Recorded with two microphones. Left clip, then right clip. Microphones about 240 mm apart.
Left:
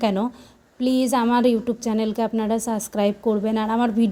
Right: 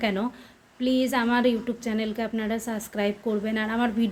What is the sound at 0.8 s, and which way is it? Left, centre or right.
A woman's voice, left.